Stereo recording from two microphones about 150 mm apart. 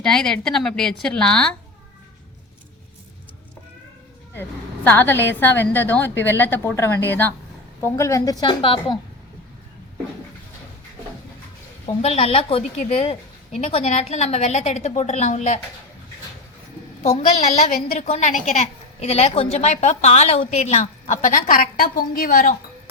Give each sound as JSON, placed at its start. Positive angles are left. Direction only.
{"t": 0.0, "sound": "a woman's voice", "side_deg": 5}
{"t": 4.4, "sound": "a woman's voice", "side_deg": 15}
{"t": 12.0, "sound": "a woman's voice", "side_deg": 40}
{"t": 17.7, "sound": "a woman's voice", "side_deg": 60}